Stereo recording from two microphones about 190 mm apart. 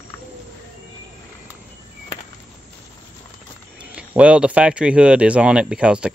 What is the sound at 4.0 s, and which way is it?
Speech, 5° right (ahead or behind).